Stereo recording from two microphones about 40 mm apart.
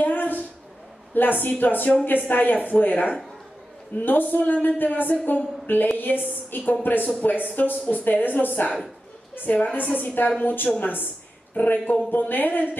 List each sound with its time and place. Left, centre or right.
0.0 s a sound: left
1.1 s a woman's voice: left
9.8 s speech: left